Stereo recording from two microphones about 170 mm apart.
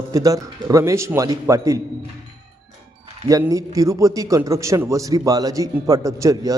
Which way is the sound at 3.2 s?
20° right (ahead or behind).